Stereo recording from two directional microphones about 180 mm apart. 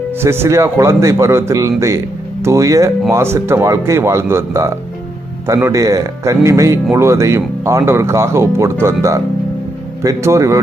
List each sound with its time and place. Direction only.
0.2 s speech: 15° right (ahead or behind)